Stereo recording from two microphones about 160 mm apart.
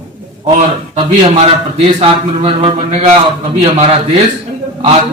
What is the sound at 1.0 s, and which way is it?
A man's voice, 30° right (ahead or behind).